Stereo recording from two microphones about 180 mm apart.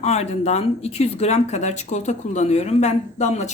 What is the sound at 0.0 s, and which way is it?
Speech, 40° left (ahead or behind).